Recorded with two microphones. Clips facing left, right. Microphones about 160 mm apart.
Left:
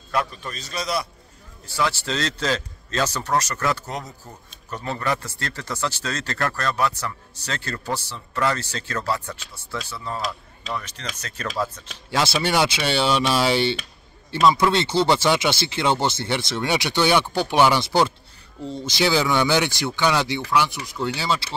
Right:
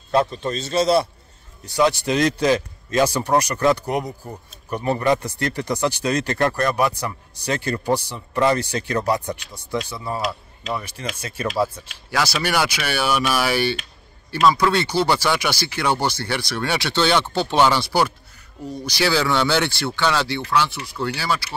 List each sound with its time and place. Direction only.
0.1 s a man's voice: 25° right (ahead or behind)
1.7 s speech: 15° right (ahead or behind)
12.1 s speech: 25° left (ahead or behind)